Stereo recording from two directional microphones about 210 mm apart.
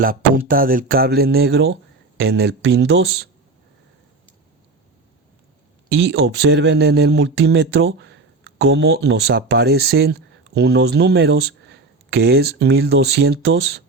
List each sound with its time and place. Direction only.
0.0 s a sound: 45° right (ahead or behind)
0.4 s speech: 40° right (ahead or behind)
6.0 s speech: 50° right (ahead or behind)